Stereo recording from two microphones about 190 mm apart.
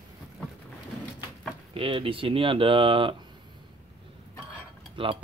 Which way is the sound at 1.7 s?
30° right (ahead or behind).